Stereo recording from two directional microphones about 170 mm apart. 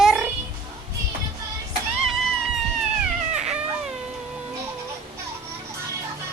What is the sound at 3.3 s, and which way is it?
Baby cry, 5° right (ahead or behind).